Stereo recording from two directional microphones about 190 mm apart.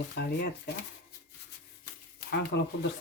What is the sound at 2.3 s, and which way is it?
Speech, 65° left (ahead or behind).